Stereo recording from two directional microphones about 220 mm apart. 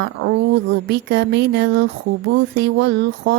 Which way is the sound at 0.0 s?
55° right (ahead or behind).